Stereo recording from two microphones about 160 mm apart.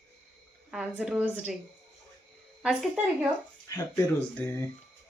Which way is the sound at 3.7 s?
15° left (ahead or behind).